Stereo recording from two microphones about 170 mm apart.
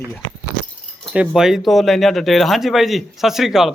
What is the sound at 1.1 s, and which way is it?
Speech, 5° right (ahead or behind).